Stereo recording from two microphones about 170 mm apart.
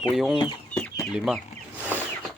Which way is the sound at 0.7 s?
15° left (ahead or behind).